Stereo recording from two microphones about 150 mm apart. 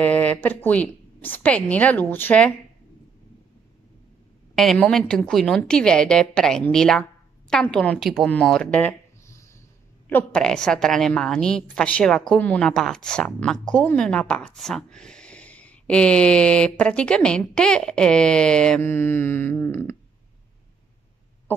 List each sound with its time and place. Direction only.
0.0 s speech: 10° left (ahead or behind)
4.7 s a woman's voice: 5° left (ahead or behind)